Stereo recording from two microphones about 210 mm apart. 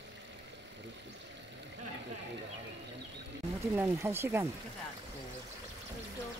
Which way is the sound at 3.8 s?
10° right (ahead or behind).